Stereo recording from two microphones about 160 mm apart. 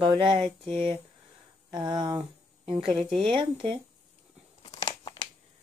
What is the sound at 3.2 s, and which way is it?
Speech, 35° right (ahead or behind).